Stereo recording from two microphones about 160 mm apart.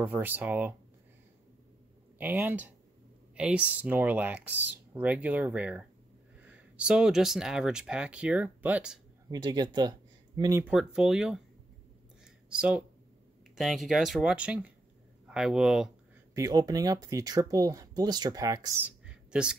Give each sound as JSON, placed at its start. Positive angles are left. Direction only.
{"t": 0.0, "sound": "speech", "side_deg": -10}
{"t": 2.1, "sound": "speech", "side_deg": -10}
{"t": 9.3, "sound": "speech", "side_deg": -25}
{"t": 10.6, "sound": "speech", "side_deg": -5}
{"t": 12.4, "sound": "speech", "side_deg": -5}
{"t": 16.3, "sound": "speech", "side_deg": -20}
{"t": 18.8, "sound": "a sound", "side_deg": -5}